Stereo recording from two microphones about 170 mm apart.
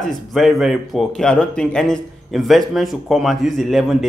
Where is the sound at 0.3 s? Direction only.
Centre (ahead or behind).